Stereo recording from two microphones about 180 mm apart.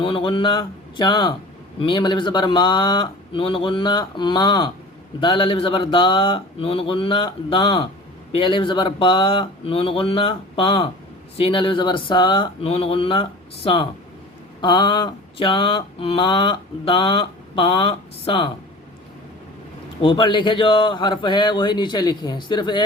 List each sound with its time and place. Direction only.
0.0 s mantra: 30° left (ahead or behind)
20.0 s mantra: 30° left (ahead or behind)